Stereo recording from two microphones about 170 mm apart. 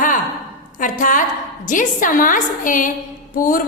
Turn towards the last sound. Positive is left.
turn(degrees=55)  # may be behind; listen again after turning